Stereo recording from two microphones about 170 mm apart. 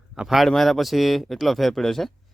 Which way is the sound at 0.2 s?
Centre (ahead or behind).